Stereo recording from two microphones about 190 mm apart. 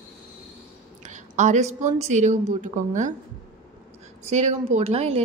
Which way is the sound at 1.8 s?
40° right (ahead or behind).